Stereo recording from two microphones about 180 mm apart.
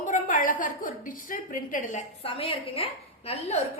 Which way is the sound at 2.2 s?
30° left (ahead or behind).